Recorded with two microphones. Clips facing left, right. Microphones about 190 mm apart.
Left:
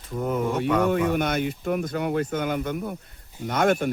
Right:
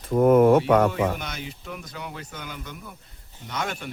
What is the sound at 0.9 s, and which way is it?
Speech, 55° left (ahead or behind).